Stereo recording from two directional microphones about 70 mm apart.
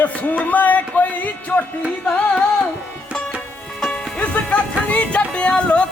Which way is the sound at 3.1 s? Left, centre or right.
Centre.